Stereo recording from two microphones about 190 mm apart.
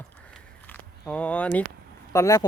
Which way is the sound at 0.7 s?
5° left (ahead or behind).